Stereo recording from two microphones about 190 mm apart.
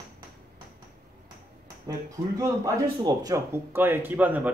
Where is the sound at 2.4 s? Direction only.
20° right (ahead or behind).